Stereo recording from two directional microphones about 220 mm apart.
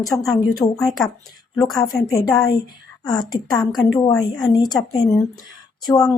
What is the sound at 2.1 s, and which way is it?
Speech, 15° left (ahead or behind).